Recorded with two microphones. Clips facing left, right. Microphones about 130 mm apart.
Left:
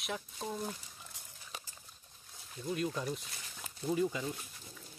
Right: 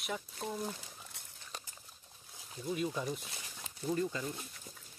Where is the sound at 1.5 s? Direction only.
Centre (ahead or behind).